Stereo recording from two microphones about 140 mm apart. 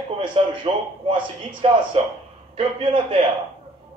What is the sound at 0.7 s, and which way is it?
A man's voice, 45° right (ahead or behind).